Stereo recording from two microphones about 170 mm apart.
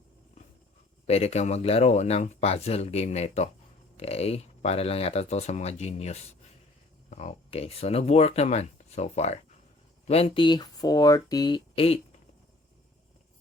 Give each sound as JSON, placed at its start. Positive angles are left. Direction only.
{"t": 1.0, "sound": "speech", "side_deg": 40}